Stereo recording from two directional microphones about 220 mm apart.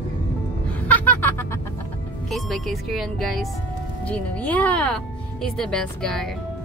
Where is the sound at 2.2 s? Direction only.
Centre (ahead or behind).